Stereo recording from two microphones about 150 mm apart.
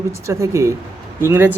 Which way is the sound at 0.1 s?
20° right (ahead or behind).